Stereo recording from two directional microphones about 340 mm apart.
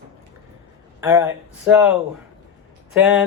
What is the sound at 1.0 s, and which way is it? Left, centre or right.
Speech, centre.